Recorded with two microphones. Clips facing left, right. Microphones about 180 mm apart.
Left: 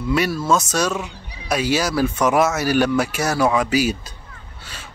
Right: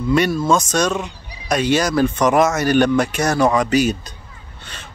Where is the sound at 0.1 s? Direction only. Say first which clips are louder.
Right 3 dB; 5° left (ahead or behind).